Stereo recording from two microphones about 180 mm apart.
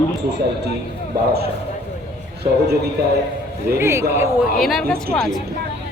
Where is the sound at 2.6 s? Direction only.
60° right (ahead or behind).